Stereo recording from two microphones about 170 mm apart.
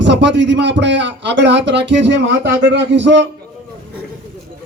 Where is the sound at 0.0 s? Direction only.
90° right.